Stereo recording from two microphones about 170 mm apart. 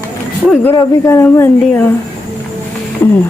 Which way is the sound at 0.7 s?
15° left (ahead or behind).